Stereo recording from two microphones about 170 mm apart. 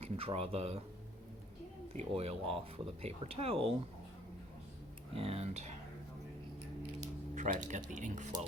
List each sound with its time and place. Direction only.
0.0 s speech: 35° right (ahead or behind)
1.9 s speech: 40° right (ahead or behind)
5.1 s speech: 35° right (ahead or behind)
7.3 s speech: 50° right (ahead or behind)